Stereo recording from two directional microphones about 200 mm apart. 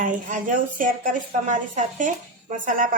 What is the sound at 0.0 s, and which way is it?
A woman's voice, 40° right (ahead or behind).